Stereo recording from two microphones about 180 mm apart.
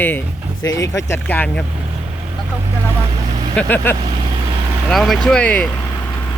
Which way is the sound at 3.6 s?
10° left (ahead or behind).